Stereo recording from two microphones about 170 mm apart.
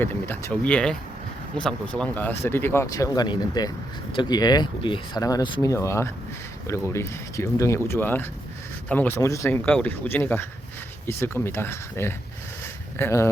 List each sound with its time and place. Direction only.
0.0 s speech: 15° left (ahead or behind); by 5.7 s 30° left (ahead or behind)
5.7 s speech: 15° left (ahead or behind)